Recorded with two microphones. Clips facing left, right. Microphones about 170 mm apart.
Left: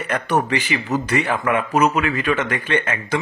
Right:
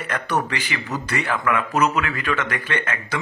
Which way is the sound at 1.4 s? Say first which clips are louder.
Left 1 dB; 25° left (ahead or behind).